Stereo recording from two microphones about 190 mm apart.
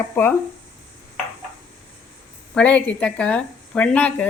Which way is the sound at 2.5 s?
5° left (ahead or behind).